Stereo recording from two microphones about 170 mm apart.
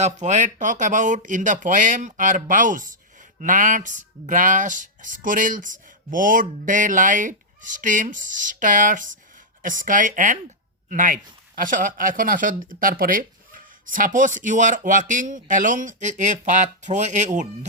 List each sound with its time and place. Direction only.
0.0 s speech: 45° right (ahead or behind)